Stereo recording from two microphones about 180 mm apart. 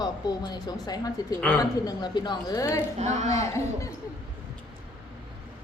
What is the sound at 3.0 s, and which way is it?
Speech, 40° right (ahead or behind).